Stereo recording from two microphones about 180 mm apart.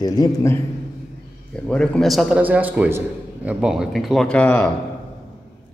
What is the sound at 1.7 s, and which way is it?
A man's voice, 5° left (ahead or behind).